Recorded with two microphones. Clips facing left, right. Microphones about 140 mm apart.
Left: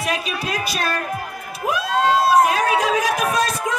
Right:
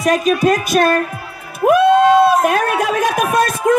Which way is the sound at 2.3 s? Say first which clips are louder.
Right 1 dB; 50° right (ahead or behind).